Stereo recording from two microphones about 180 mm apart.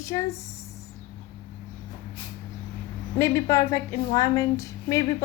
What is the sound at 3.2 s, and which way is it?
A woman's voice, 15° left (ahead or behind).